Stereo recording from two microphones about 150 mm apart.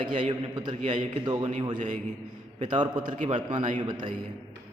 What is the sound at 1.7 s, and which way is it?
Speech, 55° right (ahead or behind).